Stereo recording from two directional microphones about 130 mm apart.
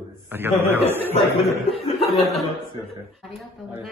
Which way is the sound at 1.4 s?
Centre (ahead or behind).